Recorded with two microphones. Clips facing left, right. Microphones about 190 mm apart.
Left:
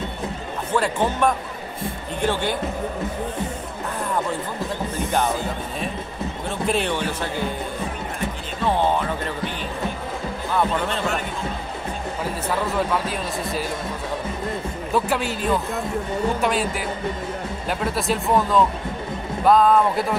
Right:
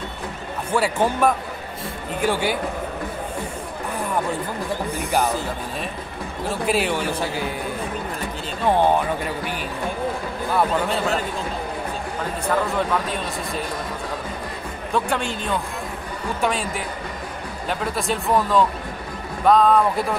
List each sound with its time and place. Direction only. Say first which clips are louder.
0.7 s a man's voice: right 1 dB; 10° right (ahead or behind)
4.9 s a man's voice: even; 10° right (ahead or behind)
6.7 s a man's voice: right 1 dB; 10° right (ahead or behind)
8.6 s a man's voice: right 3 dB; 15° right (ahead or behind)
12.4 s speech: right 2 dB; 5° left (ahead or behind)
15.0 s speech: left 1 dB; 5° left (ahead or behind)